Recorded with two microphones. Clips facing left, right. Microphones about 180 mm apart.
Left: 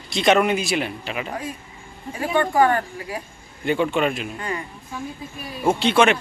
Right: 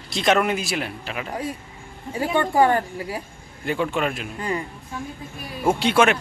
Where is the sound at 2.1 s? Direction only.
30° right (ahead or behind).